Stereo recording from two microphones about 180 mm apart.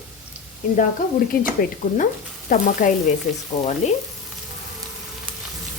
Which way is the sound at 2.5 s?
50° left (ahead or behind).